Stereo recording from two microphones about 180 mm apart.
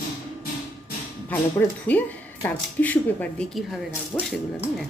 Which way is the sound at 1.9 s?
10° left (ahead or behind).